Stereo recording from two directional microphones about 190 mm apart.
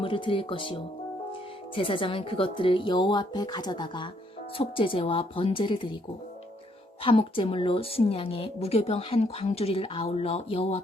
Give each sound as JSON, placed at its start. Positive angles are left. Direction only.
{"t": 0.0, "sound": "speech", "side_deg": 25}
{"t": 7.0, "sound": "a woman's voice", "side_deg": 30}